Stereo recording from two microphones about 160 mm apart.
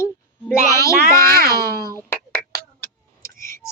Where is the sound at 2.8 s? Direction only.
15° left (ahead or behind).